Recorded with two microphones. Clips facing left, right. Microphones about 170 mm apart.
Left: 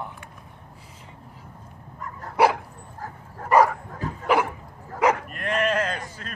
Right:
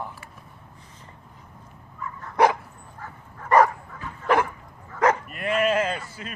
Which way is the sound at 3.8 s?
35° left (ahead or behind).